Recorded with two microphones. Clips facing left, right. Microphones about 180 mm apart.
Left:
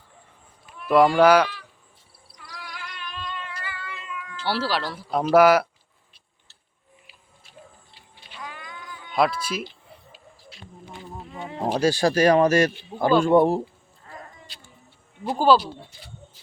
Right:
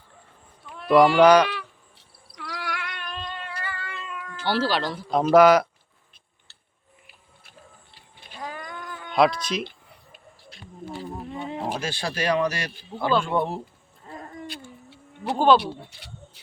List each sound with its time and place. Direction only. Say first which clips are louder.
0.9 s speech: right 1 dB; 5° left (ahead or behind)
1.5 s cat: right 7 dB; 75° right (ahead or behind)
3.6 s cat: right 2 dB; 50° right (ahead or behind)
4.4 s speech: right 2 dB; 5° left (ahead or behind)
8.3 s a sound: right 4 dB; 40° right (ahead or behind)
9.1 s speech: right 2 dB; 5° left (ahead or behind)
9.6 s a sound: left 2 dB; 55° right (ahead or behind)
11.7 s speech: left 9 dB; 40° left (ahead or behind)
14.3 s a sound: right 12 dB; 55° right (ahead or behind); by 15.4 s 70° right (ahead or behind)
15.5 s speech: even; 65° right (ahead or behind)